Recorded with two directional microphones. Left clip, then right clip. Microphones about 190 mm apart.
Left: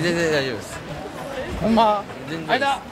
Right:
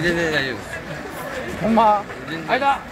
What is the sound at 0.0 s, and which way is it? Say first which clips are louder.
Speech: right 1 dB; 40° left (ahead or behind).